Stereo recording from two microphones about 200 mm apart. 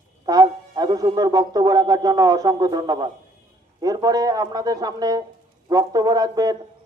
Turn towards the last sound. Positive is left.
turn(degrees=-20)  # may be behind; listen again after turning